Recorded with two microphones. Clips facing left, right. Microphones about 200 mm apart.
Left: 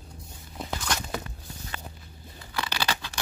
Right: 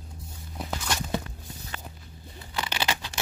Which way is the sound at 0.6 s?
5° right (ahead or behind).